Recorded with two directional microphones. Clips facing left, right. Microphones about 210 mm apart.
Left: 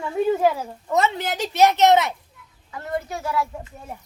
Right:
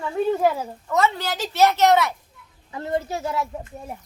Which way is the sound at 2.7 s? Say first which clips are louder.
Right 3 dB; 25° right (ahead or behind).